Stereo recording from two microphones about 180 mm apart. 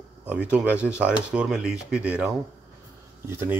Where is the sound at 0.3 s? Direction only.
10° right (ahead or behind).